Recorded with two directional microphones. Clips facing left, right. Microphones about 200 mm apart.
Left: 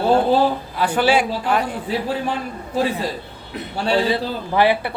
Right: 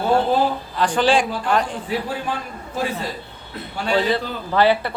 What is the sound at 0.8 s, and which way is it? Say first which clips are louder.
Speech: even; 10° left (ahead or behind).